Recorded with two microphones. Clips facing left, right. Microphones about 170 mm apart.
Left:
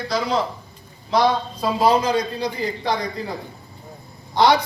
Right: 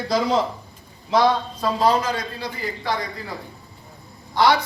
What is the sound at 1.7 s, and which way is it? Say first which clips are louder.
A man's voice: left 3 dB; 10° left (ahead or behind).